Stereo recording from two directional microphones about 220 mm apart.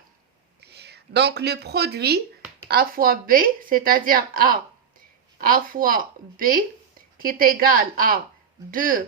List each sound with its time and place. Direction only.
0.6 s speech: 50° right (ahead or behind)